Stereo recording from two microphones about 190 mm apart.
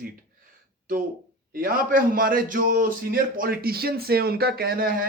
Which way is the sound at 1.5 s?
50° right (ahead or behind).